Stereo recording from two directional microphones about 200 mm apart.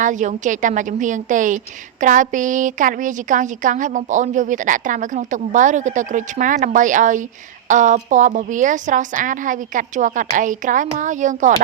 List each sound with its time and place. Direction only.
0.0 s a woman's voice: 40° right (ahead or behind)